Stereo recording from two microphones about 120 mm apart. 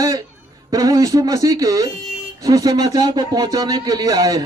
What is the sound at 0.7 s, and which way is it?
Speech, 30° right (ahead or behind).